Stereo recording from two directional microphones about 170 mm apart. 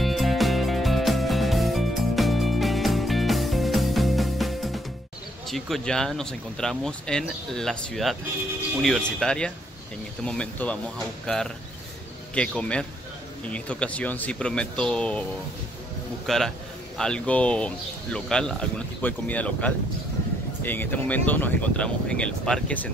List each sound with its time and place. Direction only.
0.0 s music: centre (ahead or behind)
5.5 s a man's voice: centre (ahead or behind)
16.3 s a man's voice: centre (ahead or behind)